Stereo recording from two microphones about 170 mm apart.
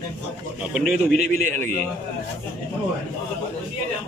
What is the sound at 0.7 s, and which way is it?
Speech, 5° right (ahead or behind).